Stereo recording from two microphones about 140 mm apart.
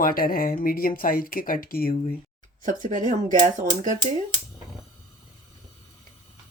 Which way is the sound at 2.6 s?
70° right (ahead or behind).